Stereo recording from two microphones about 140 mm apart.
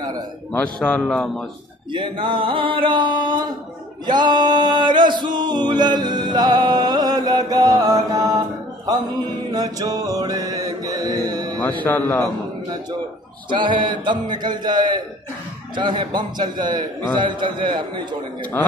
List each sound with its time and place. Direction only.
0.5 s a man's voice: 10° left (ahead or behind)
1.9 s music: 35° right (ahead or behind)
9.5 s mantra: 25° right (ahead or behind)
11.7 s a man's voice: 10° left (ahead or behind)
13.5 s music: 35° right (ahead or behind)